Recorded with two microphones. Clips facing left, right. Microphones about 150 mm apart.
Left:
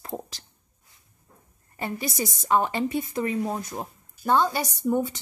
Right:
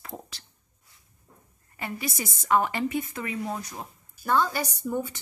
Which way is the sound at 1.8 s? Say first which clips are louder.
Left 4 dB; 30° left (ahead or behind).